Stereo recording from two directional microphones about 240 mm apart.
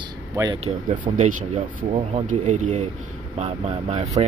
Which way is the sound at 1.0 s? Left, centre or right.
Right.